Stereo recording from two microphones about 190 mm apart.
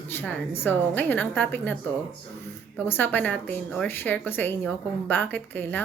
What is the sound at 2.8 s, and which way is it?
A woman's voice, 10° left (ahead or behind).